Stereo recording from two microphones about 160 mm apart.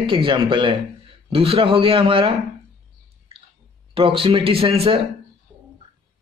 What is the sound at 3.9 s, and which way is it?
A man's voice, 35° right (ahead or behind).